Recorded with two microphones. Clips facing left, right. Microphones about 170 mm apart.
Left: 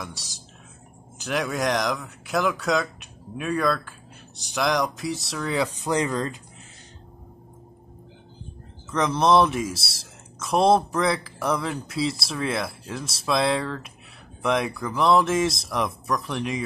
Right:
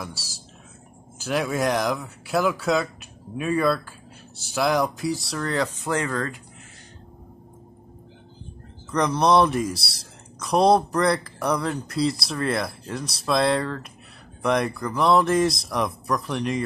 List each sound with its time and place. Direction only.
0.0 s speech: centre (ahead or behind)
5.8 s speech: 15° left (ahead or behind)
8.9 s speech: centre (ahead or behind)